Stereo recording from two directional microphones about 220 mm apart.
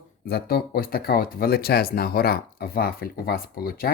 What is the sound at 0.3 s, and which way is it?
Speech, 45° left (ahead or behind).